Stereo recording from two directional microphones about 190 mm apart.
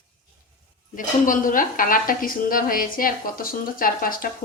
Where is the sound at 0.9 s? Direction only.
45° left (ahead or behind).